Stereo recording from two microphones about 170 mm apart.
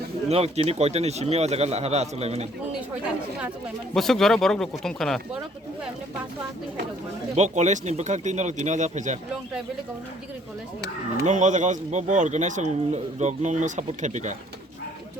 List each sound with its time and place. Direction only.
0.3 s speech: 40° right (ahead or behind)
3.9 s speech: centre (ahead or behind)
7.3 s speech: 45° right (ahead or behind)
11.2 s speech: 45° right (ahead or behind)